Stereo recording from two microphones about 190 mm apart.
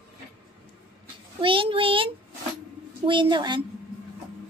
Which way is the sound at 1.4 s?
25° right (ahead or behind).